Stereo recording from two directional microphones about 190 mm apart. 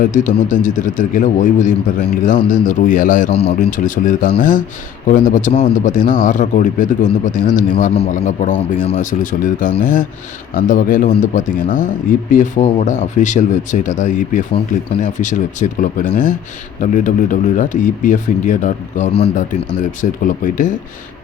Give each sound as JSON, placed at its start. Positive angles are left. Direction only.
{"t": 0.0, "sound": "a man's voice", "side_deg": 40}
{"t": 3.2, "sound": "speech", "side_deg": 30}
{"t": 3.7, "sound": "a man's voice", "side_deg": 45}